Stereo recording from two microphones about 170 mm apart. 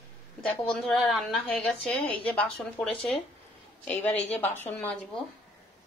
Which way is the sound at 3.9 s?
40° left (ahead or behind).